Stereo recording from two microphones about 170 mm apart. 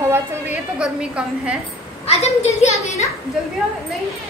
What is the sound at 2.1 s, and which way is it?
A woman's voice, 40° left (ahead or behind).